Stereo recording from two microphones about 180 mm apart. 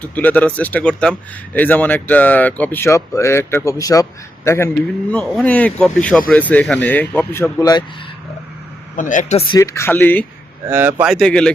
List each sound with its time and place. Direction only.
0.0 s speech: 10° left (ahead or behind)
9.0 s speech: 45° left (ahead or behind)
9.5 s speech: 20° left (ahead or behind)
10.7 s speech: 10° right (ahead or behind); by 11.5 s 5° left (ahead or behind)